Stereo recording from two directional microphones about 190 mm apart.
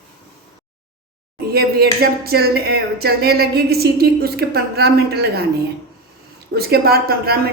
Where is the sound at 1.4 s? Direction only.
55° right (ahead or behind).